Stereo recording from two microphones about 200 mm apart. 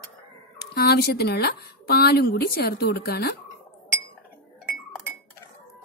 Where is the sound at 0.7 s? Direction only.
55° left (ahead or behind).